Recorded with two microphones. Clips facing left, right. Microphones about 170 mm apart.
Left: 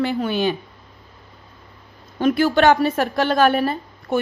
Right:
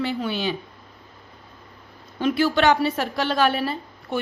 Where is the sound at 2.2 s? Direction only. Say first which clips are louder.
Left 4 dB; 50° left (ahead or behind).